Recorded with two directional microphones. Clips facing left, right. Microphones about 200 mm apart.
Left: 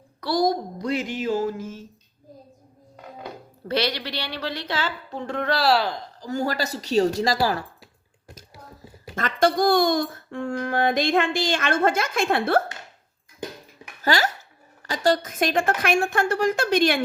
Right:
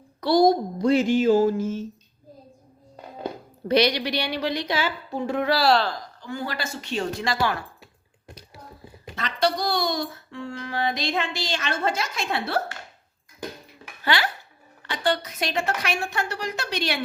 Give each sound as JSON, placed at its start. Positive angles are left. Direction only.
{"t": 0.2, "sound": "a sound", "side_deg": -25}
{"t": 3.7, "sound": "a woman's voice", "side_deg": -15}
{"t": 6.1, "sound": "speech", "side_deg": 40}
{"t": 9.1, "sound": "speech", "side_deg": 50}
{"t": 14.0, "sound": "speech", "side_deg": 45}